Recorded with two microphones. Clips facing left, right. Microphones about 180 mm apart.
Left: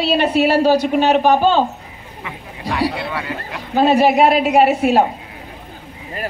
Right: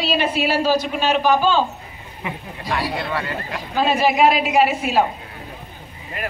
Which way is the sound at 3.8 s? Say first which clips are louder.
Left 5 dB; 60° left (ahead or behind).